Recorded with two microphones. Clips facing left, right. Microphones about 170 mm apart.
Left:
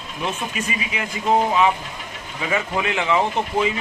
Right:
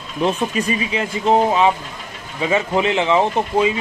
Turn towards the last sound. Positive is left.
turn(degrees=-20)  # may be behind; listen again after turning